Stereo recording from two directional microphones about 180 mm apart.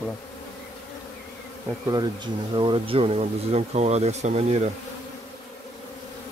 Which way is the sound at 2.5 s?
30° right (ahead or behind).